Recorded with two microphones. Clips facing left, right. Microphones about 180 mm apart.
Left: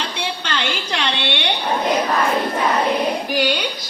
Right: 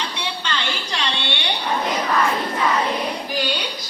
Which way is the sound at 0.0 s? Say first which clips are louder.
Left 2 dB; 60° left (ahead or behind).